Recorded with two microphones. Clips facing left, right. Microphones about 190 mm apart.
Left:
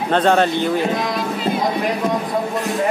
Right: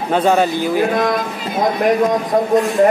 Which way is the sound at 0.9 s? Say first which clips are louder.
Right 5 dB; 50° right (ahead or behind).